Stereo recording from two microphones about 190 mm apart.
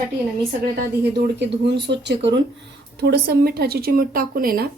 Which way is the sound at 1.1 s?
65° right (ahead or behind).